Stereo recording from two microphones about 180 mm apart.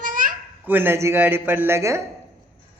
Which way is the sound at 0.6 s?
10° right (ahead or behind).